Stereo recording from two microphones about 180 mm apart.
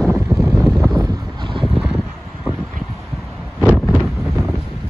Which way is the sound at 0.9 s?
25° right (ahead or behind).